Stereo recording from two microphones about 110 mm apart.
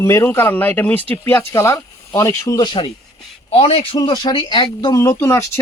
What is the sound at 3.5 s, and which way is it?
Speech, 65° left (ahead or behind).